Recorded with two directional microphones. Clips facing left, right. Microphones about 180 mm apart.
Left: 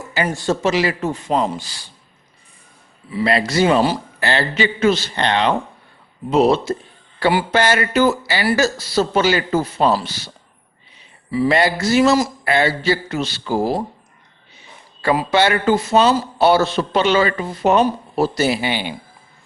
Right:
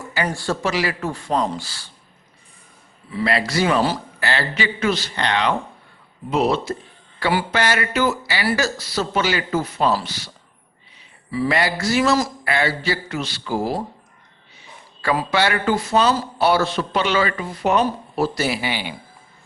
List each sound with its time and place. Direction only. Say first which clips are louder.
0.3 s a man's voice: left 7 dB; 20° left (ahead or behind)
3.2 s a man's voice: left 4 dB; 25° left (ahead or behind)
15.3 s a man's voice: left 5 dB; 25° left (ahead or behind)